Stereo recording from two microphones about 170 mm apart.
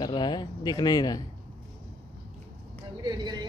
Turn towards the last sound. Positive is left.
turn(degrees=-25)  # may be behind; listen again after turning